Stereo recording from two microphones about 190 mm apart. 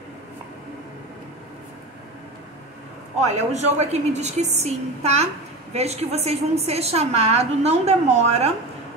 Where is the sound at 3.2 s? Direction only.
35° right (ahead or behind).